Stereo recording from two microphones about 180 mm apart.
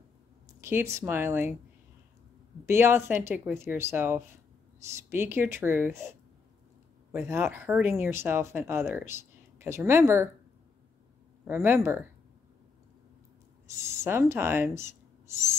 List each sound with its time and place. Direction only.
0.6 s speech: 15° right (ahead or behind)
2.6 s speech: 15° right (ahead or behind)
11.4 s speech: 10° right (ahead or behind)
13.7 s speech: 15° right (ahead or behind)